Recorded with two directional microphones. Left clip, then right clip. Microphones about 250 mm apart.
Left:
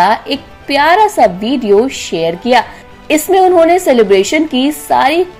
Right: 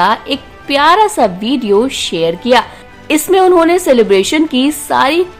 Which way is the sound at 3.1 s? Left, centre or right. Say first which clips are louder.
Even; centre.